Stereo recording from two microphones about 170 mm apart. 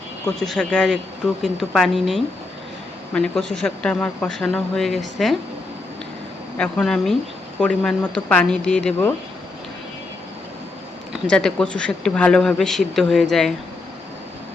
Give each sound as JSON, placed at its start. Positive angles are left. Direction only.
{"t": 0.3, "sound": "speech", "side_deg": 0}
{"t": 6.6, "sound": "speech", "side_deg": 5}
{"t": 11.3, "sound": "speech", "side_deg": 5}